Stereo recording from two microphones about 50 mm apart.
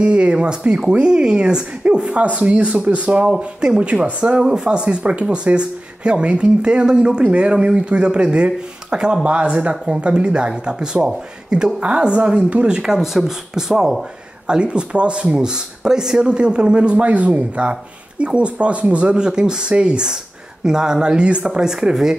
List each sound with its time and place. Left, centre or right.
0.0 s speech: right
12.8 s speech: centre
14.5 s speech: centre